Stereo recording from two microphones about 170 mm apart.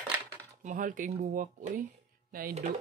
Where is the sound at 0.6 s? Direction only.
50° right (ahead or behind).